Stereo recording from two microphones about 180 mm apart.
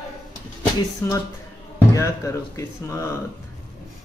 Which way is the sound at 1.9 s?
15° left (ahead or behind).